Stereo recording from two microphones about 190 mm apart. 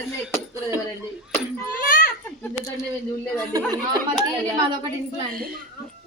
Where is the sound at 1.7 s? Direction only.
45° left (ahead or behind).